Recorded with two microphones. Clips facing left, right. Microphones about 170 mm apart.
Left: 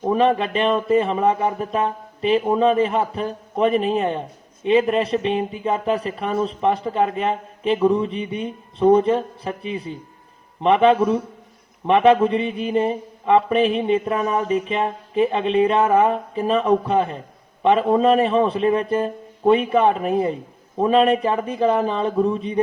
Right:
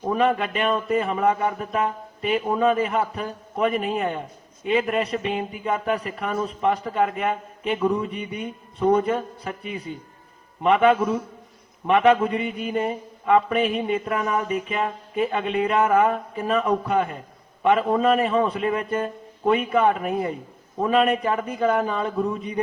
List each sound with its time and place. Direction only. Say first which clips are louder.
0.0 s mantra: left 3 dB; 25° left (ahead or behind)